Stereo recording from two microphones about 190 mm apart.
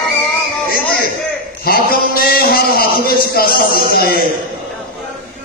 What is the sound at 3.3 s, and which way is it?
Speech, 50° left (ahead or behind).